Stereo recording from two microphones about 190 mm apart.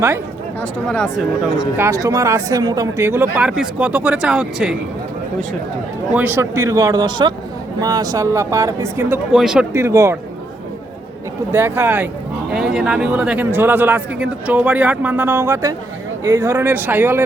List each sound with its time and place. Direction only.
0.6 s speech: 5° left (ahead or behind)
1.7 s speech: 15° right (ahead or behind)
6.1 s speech: 10° right (ahead or behind)
9.7 s speech: 15° right (ahead or behind)
11.5 s speech: 10° right (ahead or behind)